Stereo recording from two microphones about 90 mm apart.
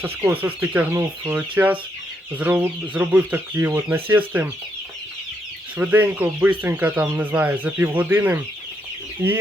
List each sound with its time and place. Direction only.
0.4 s speech: 20° right (ahead or behind)
5.7 s speech: 20° right (ahead or behind)